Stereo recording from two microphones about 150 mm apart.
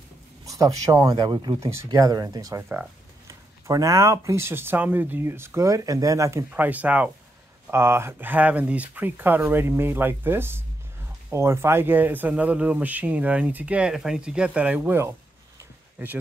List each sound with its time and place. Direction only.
0.5 s speech: 25° right (ahead or behind)